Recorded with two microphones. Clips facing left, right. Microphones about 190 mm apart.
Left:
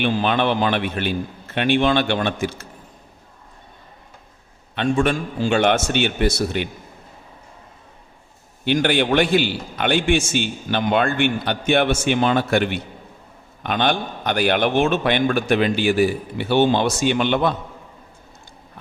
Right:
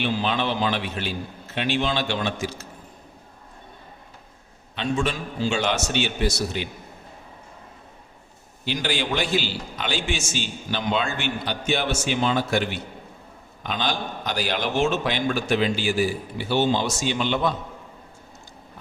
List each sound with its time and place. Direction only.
0.0 s a man's voice: 55° left (ahead or behind)
4.7 s a man's voice: 55° left (ahead or behind)
8.6 s a man's voice: 60° left (ahead or behind)